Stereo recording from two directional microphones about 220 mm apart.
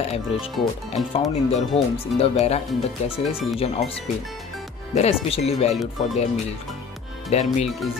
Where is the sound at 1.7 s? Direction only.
30° left (ahead or behind).